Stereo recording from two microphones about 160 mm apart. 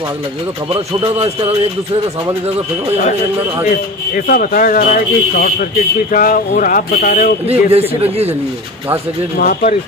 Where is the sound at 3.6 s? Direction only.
55° left (ahead or behind).